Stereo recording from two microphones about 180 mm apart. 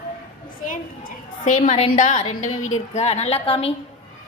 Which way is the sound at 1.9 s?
45° left (ahead or behind).